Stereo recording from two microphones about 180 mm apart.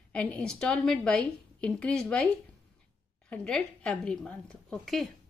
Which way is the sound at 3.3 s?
5° left (ahead or behind).